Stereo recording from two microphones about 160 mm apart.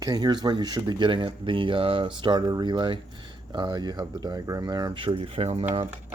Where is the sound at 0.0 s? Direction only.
25° right (ahead or behind).